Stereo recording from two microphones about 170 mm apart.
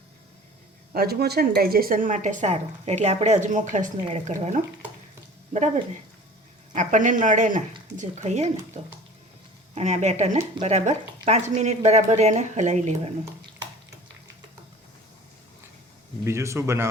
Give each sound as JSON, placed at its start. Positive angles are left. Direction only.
{"t": 0.9, "sound": "speech", "side_deg": -70}
{"t": 16.2, "sound": "speech", "side_deg": -15}